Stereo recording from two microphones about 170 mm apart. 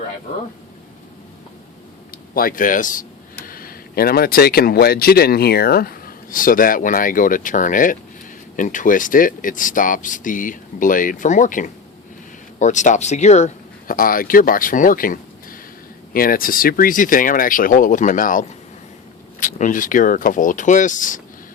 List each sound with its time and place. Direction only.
2.3 s speech: 55° left (ahead or behind)